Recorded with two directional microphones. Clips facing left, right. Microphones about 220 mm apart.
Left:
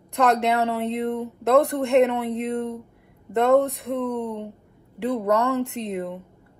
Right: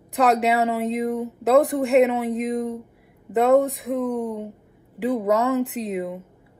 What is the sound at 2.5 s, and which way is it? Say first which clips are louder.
Speech: right 1 dB; 15° right (ahead or behind).